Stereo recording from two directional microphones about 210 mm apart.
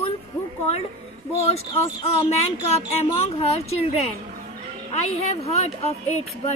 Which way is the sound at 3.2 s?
30° left (ahead or behind).